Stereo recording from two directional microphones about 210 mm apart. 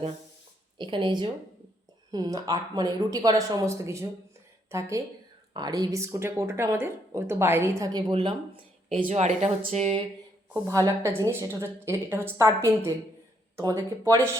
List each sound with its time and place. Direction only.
0.8 s a woman's voice: 25° right (ahead or behind)
10.7 s a woman's voice: 15° right (ahead or behind)